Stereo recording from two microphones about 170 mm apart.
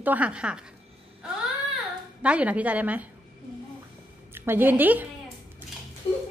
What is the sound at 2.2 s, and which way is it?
Speech, 5° right (ahead or behind).